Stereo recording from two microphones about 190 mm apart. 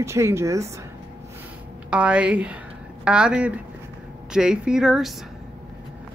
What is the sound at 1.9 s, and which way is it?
Speech, 5° right (ahead or behind).